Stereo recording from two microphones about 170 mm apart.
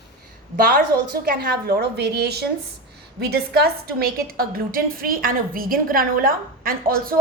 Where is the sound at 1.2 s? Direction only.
65° right (ahead or behind).